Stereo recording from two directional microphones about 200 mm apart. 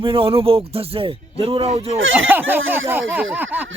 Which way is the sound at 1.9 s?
80° right.